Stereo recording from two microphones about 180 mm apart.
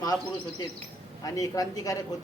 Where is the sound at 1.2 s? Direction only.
20° left (ahead or behind).